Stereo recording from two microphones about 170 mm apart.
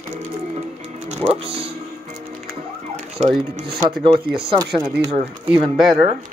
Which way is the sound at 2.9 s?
40° right (ahead or behind).